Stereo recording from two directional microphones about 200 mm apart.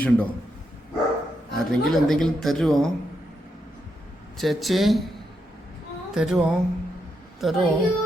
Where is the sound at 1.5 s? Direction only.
Centre (ahead or behind).